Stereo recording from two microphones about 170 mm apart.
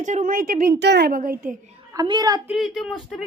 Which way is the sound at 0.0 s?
45° right (ahead or behind).